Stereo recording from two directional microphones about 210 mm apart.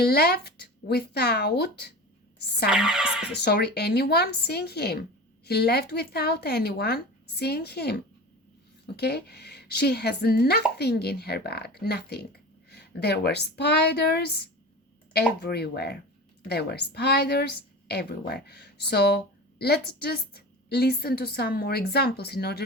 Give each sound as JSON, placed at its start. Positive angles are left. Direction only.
{"t": 0.0, "sound": "a woman's voice", "side_deg": 45}
{"t": 2.6, "sound": "music", "side_deg": -5}
{"t": 3.3, "sound": "a woman's voice", "side_deg": 50}